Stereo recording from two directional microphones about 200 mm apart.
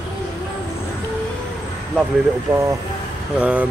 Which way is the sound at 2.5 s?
10° right (ahead or behind).